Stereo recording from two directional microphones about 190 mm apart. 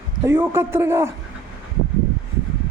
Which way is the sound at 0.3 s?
10° right (ahead or behind).